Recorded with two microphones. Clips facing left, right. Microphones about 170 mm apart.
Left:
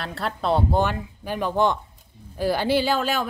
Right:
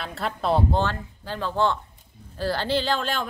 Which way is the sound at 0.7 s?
15° left (ahead or behind).